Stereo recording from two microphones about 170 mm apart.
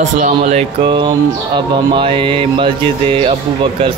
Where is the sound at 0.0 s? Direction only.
50° right (ahead or behind).